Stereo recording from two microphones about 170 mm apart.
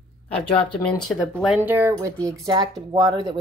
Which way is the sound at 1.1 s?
10° left (ahead or behind).